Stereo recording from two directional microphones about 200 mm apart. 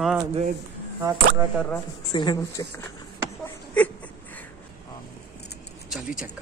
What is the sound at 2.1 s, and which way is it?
Speech, 20° left (ahead or behind).